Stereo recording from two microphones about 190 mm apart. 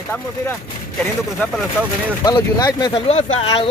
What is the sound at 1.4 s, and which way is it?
Speech, 10° left (ahead or behind).